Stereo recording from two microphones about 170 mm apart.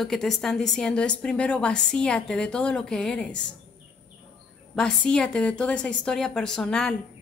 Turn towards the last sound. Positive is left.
turn(degrees=5)  # may be behind; listen again after turning